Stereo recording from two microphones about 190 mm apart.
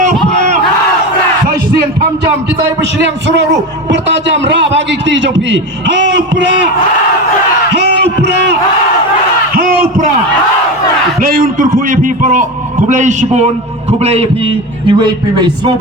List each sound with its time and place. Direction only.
3.0 s a man's voice: 65° right (ahead or behind)
8.2 s crowd: 65° right (ahead or behind)
11.2 s a man's voice: 50° right (ahead or behind); by 15.7 s 25° right (ahead or behind)